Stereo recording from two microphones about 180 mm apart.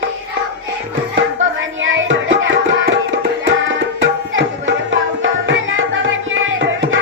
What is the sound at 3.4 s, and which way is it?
Tabla, 90° right.